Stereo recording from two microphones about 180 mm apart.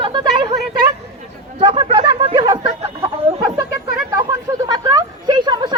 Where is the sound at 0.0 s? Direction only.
25° right (ahead or behind).